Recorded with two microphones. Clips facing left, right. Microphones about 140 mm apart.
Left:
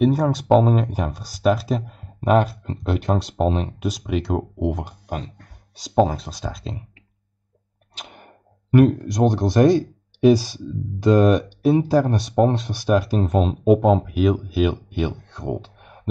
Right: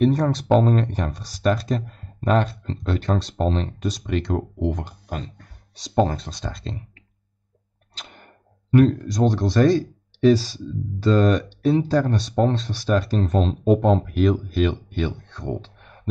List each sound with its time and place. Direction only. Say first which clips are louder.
0.0 s speech: left 1 dB; 5° left (ahead or behind)
7.9 s a sound: left 3 dB; 10° left (ahead or behind)
9.5 s speech: left 3 dB; 20° left (ahead or behind)